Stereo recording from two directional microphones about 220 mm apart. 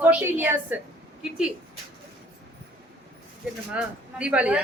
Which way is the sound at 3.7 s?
5° right (ahead or behind).